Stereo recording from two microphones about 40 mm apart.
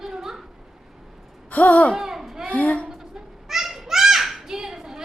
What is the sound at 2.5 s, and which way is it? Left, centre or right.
Speech, left.